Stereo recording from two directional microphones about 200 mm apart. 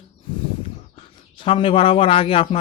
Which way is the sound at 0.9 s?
25° left (ahead or behind).